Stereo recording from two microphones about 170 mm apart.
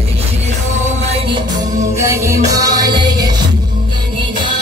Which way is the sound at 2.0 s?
15° right (ahead or behind).